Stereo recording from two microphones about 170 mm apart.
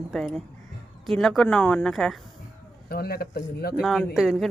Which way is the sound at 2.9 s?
65° left (ahead or behind).